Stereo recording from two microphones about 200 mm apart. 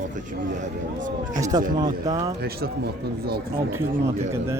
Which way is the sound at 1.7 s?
20° right (ahead or behind).